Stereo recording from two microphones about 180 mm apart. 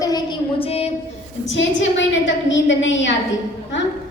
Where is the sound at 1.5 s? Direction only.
90° left.